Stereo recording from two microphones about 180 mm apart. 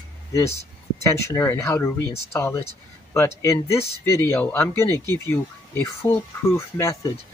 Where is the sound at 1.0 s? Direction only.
15° left (ahead or behind).